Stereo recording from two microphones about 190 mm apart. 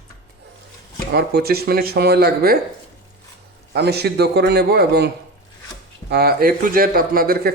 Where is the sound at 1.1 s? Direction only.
55° right (ahead or behind).